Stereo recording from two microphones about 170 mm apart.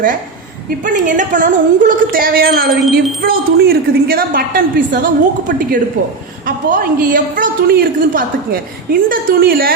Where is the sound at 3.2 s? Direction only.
65° right (ahead or behind).